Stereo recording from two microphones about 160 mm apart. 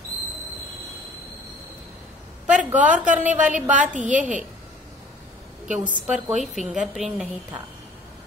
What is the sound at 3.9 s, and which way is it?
Speech, 50° right (ahead or behind).